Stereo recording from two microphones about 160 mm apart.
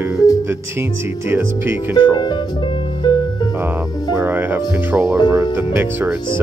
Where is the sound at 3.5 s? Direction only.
10° right (ahead or behind).